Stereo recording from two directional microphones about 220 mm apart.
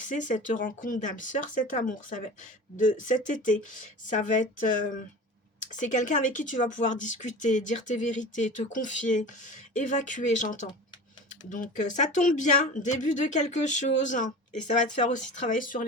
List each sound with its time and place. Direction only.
0.1 s speech: 35° left (ahead or behind)
15.4 s speech: 35° left (ahead or behind)